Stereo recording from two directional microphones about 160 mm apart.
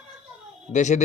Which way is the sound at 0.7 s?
50° left (ahead or behind).